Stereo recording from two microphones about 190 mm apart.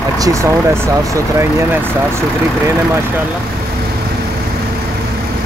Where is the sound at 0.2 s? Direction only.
15° right (ahead or behind).